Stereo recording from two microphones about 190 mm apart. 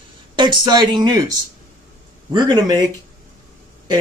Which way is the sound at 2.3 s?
20° right (ahead or behind).